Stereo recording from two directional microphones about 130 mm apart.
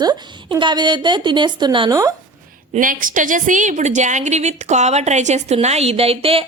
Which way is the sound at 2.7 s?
90° right.